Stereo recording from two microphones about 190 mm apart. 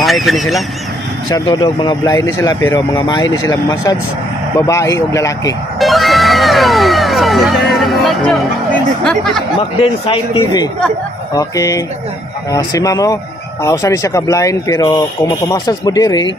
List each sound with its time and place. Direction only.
0.0 s speech: centre (ahead or behind)
1.3 s speech: 20° left (ahead or behind)
5.8 s music: centre (ahead or behind)
9.0 s speech: centre (ahead or behind)
9.6 s speech: 25° left (ahead or behind)